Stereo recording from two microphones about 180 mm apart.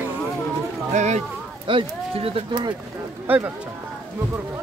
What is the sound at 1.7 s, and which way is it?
Speech, 30° right (ahead or behind).